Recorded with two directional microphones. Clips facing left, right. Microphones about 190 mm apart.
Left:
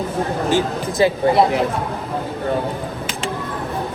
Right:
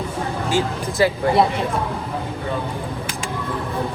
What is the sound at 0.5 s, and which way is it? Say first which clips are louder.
Speech: left 1 dB; 20° left (ahead or behind).